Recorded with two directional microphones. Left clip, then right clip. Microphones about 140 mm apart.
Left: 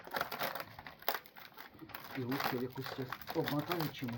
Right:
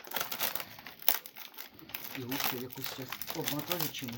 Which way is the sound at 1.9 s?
5° right (ahead or behind).